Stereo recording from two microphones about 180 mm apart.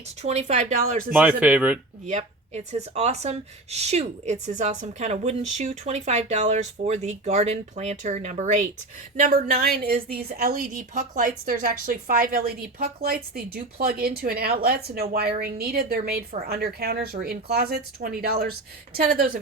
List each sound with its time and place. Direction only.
0.2 s speech: 40° right (ahead or behind)
1.1 s speech: 10° right (ahead or behind)
2.0 s speech: 40° right (ahead or behind)
9.6 s a woman's voice: 55° right (ahead or behind)